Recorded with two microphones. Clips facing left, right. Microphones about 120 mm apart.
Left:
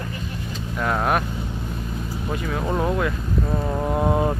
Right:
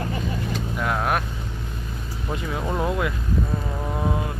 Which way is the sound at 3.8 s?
20° left (ahead or behind).